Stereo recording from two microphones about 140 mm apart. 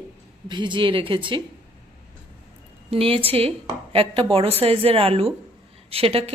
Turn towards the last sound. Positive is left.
turn(degrees=-45)  # may be behind; listen again after turning